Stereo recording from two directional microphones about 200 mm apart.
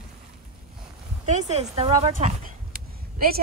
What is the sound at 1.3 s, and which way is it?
Speech, 35° right (ahead or behind).